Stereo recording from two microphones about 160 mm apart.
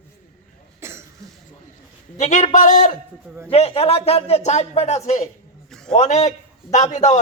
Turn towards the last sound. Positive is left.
turn(degrees=45)  # may be behind; listen again after turning